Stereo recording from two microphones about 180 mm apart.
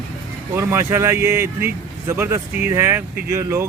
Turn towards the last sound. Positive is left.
turn(degrees=-15)  # may be behind; listen again after turning